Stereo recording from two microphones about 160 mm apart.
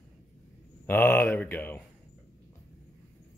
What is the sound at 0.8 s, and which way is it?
Speech, 15° left (ahead or behind).